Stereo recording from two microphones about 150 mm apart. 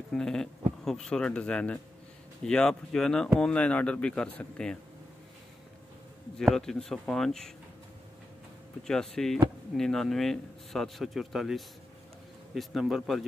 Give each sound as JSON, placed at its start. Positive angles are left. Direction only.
{"t": 0.1, "sound": "a man's voice", "side_deg": 5}
{"t": 6.3, "sound": "speech", "side_deg": 5}
{"t": 8.8, "sound": "speech", "side_deg": 5}